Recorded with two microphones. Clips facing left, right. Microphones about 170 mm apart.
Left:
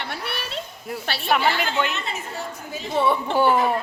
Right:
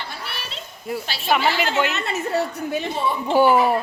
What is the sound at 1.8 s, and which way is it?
A woman's voice, 70° right (ahead or behind).